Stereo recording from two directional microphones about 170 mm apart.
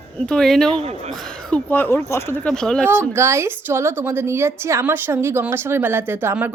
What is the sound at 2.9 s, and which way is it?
A woman's voice, 15° right (ahead or behind).